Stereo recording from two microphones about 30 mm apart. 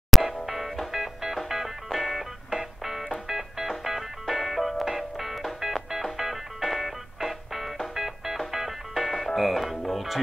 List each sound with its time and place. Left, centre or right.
0.1 s music: centre
0.9 s music: centre